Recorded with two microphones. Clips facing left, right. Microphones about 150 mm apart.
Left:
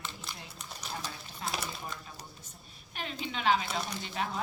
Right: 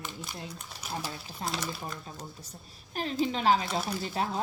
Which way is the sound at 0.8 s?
10° right (ahead or behind).